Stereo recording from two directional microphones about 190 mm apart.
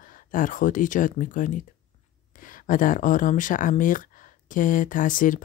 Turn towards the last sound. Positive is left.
turn(degrees=45)  # may be behind; listen again after turning